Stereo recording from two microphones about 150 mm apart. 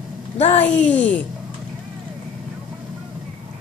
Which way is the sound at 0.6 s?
10° left (ahead or behind).